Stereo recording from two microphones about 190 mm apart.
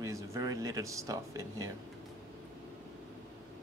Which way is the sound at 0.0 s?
15° right (ahead or behind).